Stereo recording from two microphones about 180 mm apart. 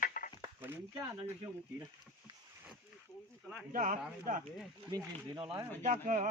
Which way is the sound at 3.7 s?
45° right (ahead or behind).